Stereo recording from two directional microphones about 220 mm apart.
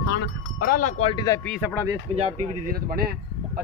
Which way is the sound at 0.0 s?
50° left (ahead or behind).